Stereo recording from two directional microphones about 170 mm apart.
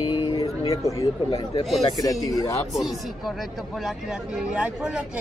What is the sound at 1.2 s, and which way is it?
Speech, 30° left (ahead or behind).